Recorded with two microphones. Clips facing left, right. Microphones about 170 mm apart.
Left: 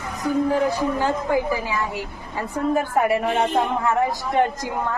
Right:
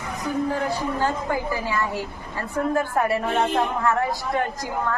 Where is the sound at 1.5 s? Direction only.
15° left (ahead or behind).